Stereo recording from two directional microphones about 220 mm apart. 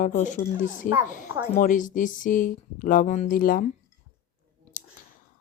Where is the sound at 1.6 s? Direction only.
35° left (ahead or behind).